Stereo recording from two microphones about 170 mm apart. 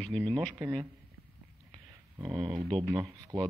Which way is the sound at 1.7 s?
25° right (ahead or behind).